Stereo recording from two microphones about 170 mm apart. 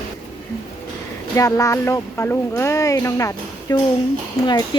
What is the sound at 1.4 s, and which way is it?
Speech, 20° left (ahead or behind).